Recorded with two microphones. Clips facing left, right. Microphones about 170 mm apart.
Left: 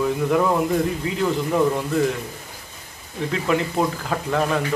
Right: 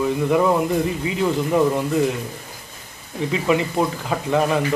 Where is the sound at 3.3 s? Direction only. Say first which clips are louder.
Right 2 dB; 5° right (ahead or behind).